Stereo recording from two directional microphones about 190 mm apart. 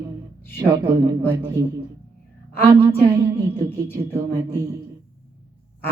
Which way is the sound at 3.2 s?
15° right (ahead or behind).